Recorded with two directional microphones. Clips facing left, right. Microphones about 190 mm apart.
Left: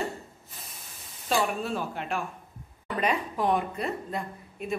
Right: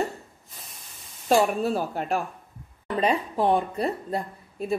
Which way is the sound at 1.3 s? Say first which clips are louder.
Right 6 dB; 40° right (ahead or behind).